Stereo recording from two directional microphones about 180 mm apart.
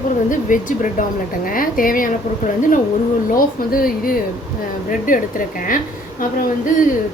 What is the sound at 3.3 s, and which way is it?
Speech, 50° left (ahead or behind).